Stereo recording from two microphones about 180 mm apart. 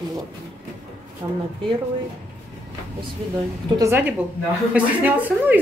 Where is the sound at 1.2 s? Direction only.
20° right (ahead or behind).